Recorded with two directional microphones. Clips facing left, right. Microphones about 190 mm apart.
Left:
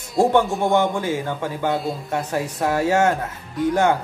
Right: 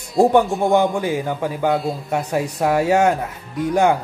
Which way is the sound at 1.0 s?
15° right (ahead or behind).